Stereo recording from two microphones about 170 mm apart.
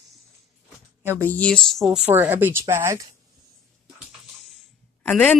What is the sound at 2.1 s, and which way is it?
Speech, 10° right (ahead or behind).